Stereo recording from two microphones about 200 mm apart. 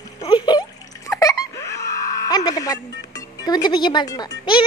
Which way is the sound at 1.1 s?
15° left (ahead or behind).